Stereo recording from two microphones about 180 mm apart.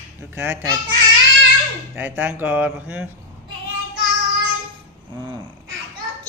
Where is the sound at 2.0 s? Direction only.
10° right (ahead or behind).